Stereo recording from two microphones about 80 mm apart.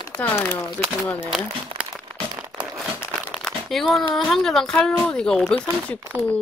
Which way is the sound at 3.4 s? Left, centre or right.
Centre.